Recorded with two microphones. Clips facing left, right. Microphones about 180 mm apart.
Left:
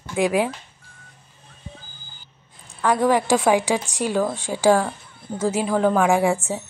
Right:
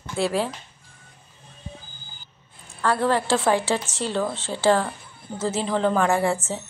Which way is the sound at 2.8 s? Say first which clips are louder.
Left 3 dB; 15° left (ahead or behind).